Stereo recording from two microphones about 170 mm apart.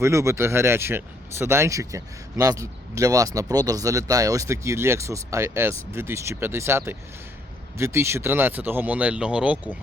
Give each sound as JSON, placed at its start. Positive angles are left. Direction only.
{"t": 0.0, "sound": "speech", "side_deg": -15}